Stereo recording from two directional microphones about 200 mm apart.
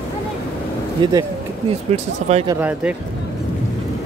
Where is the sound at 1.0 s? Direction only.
25° right (ahead or behind).